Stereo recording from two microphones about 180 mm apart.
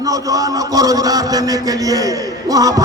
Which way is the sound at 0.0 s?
20° right (ahead or behind).